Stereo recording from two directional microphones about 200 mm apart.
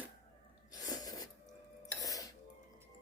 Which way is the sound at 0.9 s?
20° left (ahead or behind).